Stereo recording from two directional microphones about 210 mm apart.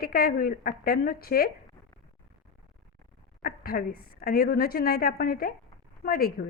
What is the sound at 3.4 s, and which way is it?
A woman's voice, 45° left (ahead or behind).